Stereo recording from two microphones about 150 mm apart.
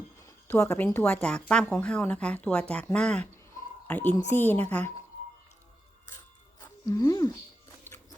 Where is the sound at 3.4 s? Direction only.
15° left (ahead or behind).